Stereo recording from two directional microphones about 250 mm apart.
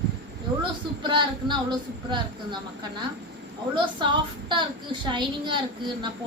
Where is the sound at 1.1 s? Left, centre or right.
Centre.